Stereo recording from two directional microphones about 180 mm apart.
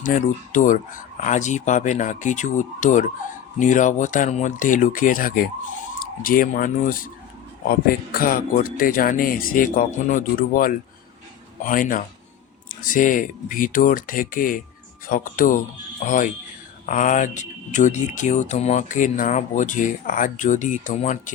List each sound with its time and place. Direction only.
0.0 s speech: 45° left (ahead or behind)